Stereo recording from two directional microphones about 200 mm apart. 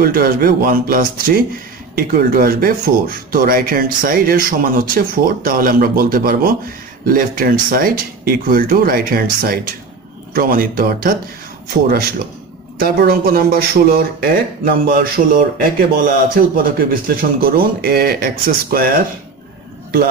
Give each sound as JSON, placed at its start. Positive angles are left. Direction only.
{"t": 0.0, "sound": "speech", "side_deg": -50}
{"t": 12.7, "sound": "speech", "side_deg": -50}